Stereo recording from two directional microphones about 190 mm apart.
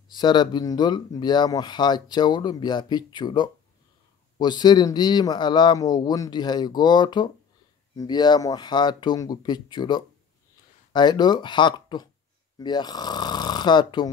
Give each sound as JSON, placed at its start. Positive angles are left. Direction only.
{"t": 0.1, "sound": "speech", "side_deg": 25}